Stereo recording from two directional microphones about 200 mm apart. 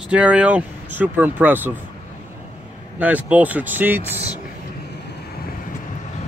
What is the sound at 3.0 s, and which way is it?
Speech, 10° right (ahead or behind).